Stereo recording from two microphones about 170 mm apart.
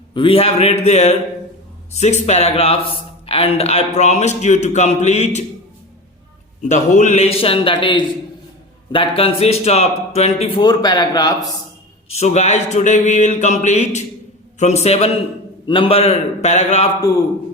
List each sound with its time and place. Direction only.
0.1 s speech: 30° left (ahead or behind)
6.6 s speech: 45° left (ahead or behind)
10.6 s speech: 25° left (ahead or behind)
12.0 s speech: 40° left (ahead or behind)